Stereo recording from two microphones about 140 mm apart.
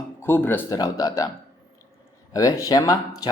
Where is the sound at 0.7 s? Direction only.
25° left (ahead or behind).